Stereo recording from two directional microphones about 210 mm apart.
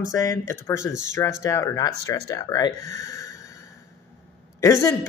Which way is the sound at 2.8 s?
15° left (ahead or behind).